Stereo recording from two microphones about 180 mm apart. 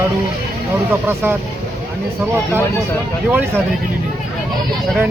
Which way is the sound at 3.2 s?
10° right (ahead or behind).